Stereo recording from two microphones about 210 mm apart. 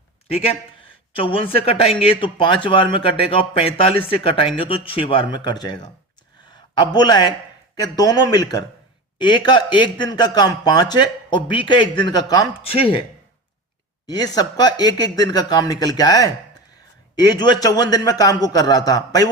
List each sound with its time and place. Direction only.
0.3 s a man's voice: 30° left (ahead or behind)
14.1 s a man's voice: 20° left (ahead or behind)